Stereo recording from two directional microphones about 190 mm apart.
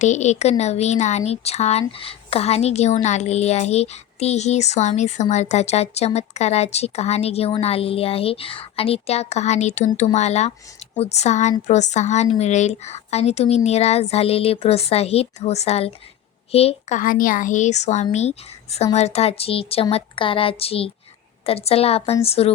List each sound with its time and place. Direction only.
0.0 s a woman's voice: 40° left (ahead or behind)
17.0 s a woman's voice: 45° left (ahead or behind)